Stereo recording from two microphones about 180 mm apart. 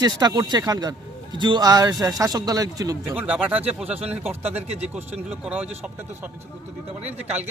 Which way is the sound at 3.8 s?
35° right (ahead or behind).